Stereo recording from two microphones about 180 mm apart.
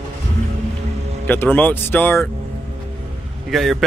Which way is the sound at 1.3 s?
10° left (ahead or behind).